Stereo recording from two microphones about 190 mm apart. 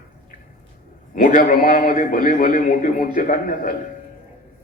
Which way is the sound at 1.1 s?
45° left (ahead or behind).